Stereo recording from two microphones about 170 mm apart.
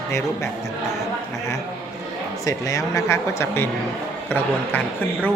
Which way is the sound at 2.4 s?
20° left (ahead or behind).